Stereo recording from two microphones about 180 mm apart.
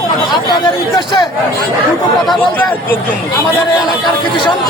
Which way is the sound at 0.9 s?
25° left (ahead or behind).